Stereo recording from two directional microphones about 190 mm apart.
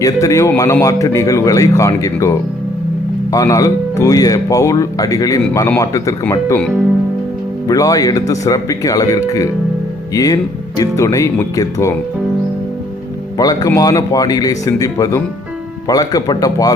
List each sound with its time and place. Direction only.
0.0 s speech: 15° left (ahead or behind)
3.3 s speech: 20° left (ahead or behind)
7.7 s speech: 20° left (ahead or behind)
13.3 s speech: 20° left (ahead or behind)